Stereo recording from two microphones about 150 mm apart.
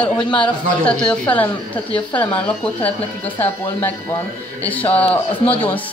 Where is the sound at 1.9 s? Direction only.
35° left (ahead or behind).